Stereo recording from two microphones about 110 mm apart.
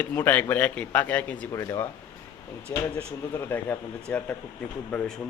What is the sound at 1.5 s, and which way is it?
A man's voice, 25° left (ahead or behind).